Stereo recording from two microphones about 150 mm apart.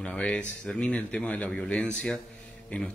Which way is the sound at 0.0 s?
10° left (ahead or behind).